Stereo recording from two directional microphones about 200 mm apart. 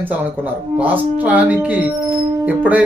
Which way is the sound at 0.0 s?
10° right (ahead or behind).